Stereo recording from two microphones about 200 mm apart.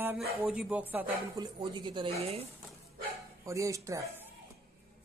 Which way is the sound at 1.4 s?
20° right (ahead or behind).